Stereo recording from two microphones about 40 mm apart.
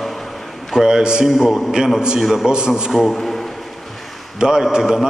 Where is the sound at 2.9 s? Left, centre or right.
Centre.